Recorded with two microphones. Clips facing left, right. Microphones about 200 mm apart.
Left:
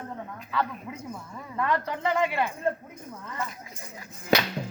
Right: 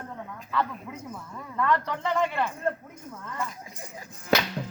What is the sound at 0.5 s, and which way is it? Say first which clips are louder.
Speech: even; 10° left (ahead or behind).